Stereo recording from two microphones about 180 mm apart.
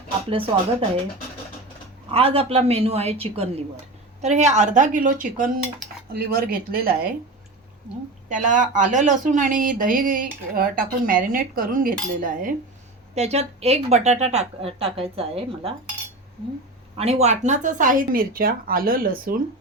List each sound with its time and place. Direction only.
0.3 s a woman's voice: 30° right (ahead or behind)
2.0 s a woman's voice: 35° right (ahead or behind); by 7.1 s 55° right (ahead or behind)
8.3 s speech: 45° right (ahead or behind)
13.1 s a woman's voice: 35° right (ahead or behind)
17.0 s speech: 35° right (ahead or behind); by 19.4 s 55° right (ahead or behind)